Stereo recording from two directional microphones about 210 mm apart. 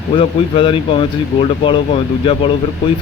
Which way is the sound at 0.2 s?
25° left (ahead or behind).